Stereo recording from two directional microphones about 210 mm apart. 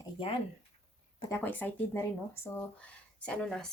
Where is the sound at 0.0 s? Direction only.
25° left (ahead or behind).